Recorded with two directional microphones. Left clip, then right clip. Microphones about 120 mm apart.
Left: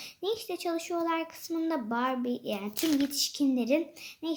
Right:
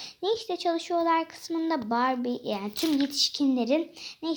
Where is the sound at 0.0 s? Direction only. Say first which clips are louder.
Right 4 dB; 20° right (ahead or behind).